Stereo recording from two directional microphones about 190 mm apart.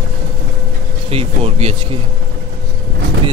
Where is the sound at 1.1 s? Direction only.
30° right (ahead or behind).